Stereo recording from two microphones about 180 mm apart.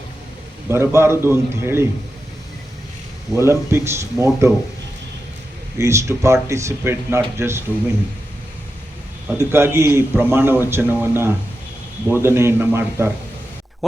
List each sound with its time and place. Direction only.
0.7 s a man's voice: 15° right (ahead or behind)
3.3 s a man's voice: 15° right (ahead or behind)
5.7 s a man's voice: 15° right (ahead or behind)
9.2 s a man's voice: 15° right (ahead or behind)